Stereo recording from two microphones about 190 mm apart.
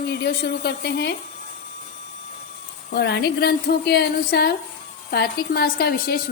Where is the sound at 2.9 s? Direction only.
60° left (ahead or behind).